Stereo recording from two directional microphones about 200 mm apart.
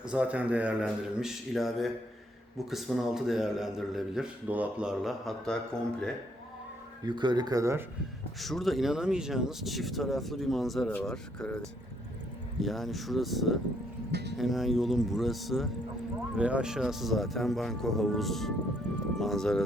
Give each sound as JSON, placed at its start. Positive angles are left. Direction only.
{"t": 0.0, "sound": "speech", "side_deg": -5}
{"t": 7.0, "sound": "speech", "side_deg": -20}
{"t": 8.4, "sound": "speech", "side_deg": 0}
{"t": 14.1, "sound": "speech", "side_deg": -55}
{"t": 14.3, "sound": "speech", "side_deg": 0}